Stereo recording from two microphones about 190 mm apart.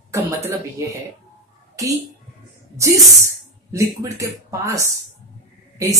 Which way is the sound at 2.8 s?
15° right (ahead or behind).